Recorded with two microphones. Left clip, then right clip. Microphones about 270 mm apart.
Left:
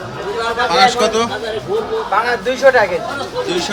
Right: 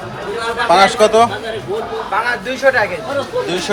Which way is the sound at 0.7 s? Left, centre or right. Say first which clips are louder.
Right 4 dB; centre.